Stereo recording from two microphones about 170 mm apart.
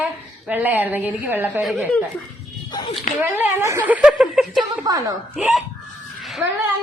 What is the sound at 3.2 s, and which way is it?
A woman's voice, 10° right (ahead or behind).